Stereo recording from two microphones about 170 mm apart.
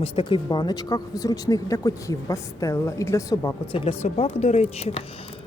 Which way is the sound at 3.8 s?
35° left (ahead or behind).